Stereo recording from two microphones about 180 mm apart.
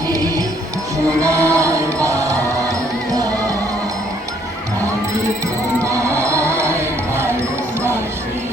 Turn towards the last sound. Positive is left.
turn(degrees=-15)  # may be behind; listen again after turning